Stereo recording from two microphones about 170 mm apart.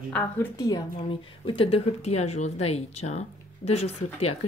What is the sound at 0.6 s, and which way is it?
Speech, 20° left (ahead or behind).